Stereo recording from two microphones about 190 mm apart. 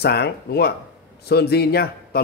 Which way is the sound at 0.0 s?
60° left (ahead or behind).